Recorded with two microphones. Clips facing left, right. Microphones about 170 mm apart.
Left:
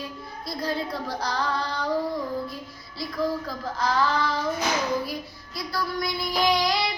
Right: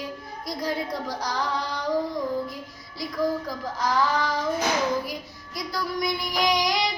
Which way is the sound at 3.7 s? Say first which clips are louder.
Even; 15° right (ahead or behind).